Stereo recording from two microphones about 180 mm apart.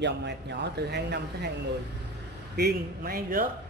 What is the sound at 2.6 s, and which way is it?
Speech, 60° right (ahead or behind).